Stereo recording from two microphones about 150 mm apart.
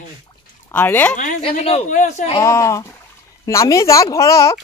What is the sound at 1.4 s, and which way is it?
Speech, 45° left (ahead or behind).